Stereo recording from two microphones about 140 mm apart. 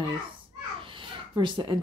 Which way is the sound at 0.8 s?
35° right (ahead or behind).